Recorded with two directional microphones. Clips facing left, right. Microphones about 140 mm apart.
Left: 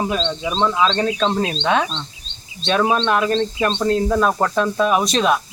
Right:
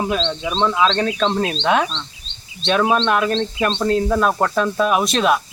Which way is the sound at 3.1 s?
5° right (ahead or behind).